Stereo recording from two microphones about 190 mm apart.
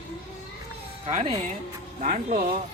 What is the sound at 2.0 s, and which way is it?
Speech, 40° right (ahead or behind).